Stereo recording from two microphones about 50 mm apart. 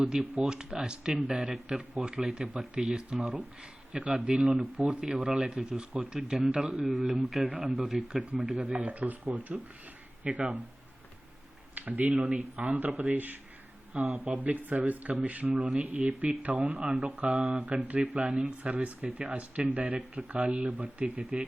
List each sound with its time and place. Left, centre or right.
0.0 s speech: centre
8.0 s speech: centre
8.6 s speech: right
10.2 s speech: right
11.7 s speech: right
17.3 s speech: centre
18.6 s speech: right